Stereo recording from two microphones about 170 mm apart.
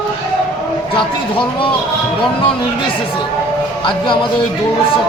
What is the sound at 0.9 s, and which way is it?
Speech, 30° left (ahead or behind).